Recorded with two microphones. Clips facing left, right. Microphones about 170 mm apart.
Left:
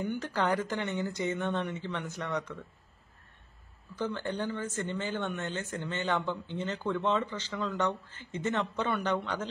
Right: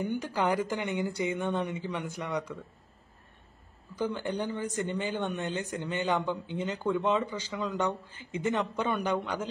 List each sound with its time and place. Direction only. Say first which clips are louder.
0.0 s speech: right 1 dB; 10° right (ahead or behind)
3.9 s speech: right 2 dB; 15° right (ahead or behind)